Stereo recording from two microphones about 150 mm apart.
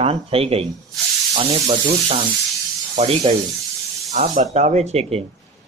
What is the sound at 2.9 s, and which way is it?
Speech, 40° right (ahead or behind).